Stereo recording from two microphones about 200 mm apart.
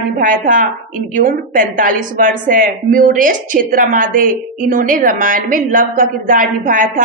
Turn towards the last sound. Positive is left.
turn(degrees=-40)  # may be behind; listen again after turning